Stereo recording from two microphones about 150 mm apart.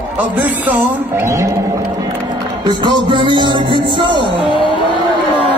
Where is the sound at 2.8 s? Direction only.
35° right (ahead or behind).